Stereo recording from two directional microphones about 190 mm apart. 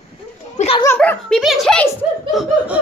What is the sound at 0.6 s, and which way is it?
Speech, 30° left (ahead or behind).